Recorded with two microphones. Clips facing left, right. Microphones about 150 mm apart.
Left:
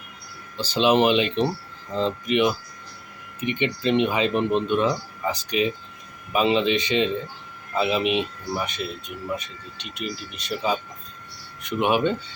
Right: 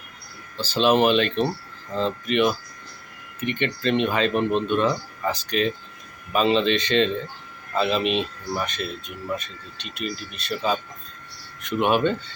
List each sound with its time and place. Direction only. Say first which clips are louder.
0.5 s speech: even; 15° left (ahead or behind)